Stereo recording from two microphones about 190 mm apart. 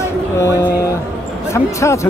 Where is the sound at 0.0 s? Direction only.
15° left (ahead or behind).